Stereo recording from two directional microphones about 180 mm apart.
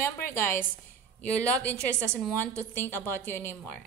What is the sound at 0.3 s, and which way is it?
A woman's voice, 10° left (ahead or behind).